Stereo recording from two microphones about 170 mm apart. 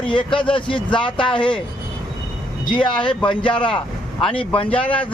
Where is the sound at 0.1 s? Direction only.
30° left (ahead or behind).